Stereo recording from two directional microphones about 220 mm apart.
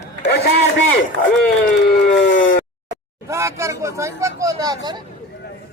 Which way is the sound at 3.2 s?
15° right (ahead or behind).